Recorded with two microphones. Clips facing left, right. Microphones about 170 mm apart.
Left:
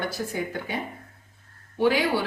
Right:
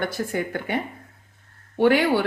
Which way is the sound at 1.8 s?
60° right (ahead or behind).